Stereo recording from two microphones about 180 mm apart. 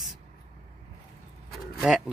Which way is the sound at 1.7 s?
Centre (ahead or behind).